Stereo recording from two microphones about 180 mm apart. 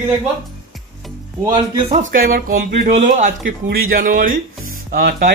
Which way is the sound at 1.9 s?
45° right (ahead or behind).